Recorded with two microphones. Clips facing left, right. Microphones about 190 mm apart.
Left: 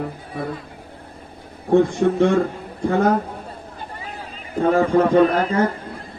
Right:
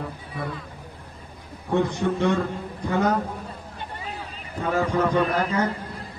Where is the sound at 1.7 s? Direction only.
50° left (ahead or behind).